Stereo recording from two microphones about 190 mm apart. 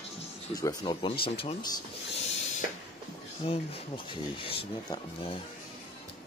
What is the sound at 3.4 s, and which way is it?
Speech, 25° left (ahead or behind).